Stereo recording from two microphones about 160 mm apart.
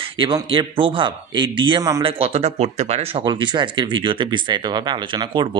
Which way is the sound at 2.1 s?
40° right (ahead or behind).